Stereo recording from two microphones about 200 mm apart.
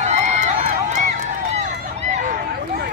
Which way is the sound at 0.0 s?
35° right (ahead or behind).